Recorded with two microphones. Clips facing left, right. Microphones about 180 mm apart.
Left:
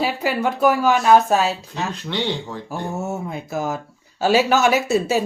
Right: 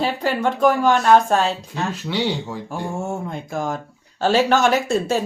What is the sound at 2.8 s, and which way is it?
Speech, 5° left (ahead or behind).